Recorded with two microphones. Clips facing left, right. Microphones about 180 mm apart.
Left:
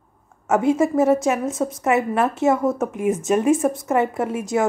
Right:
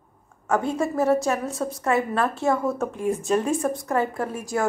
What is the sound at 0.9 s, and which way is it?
A woman's voice, 20° left (ahead or behind).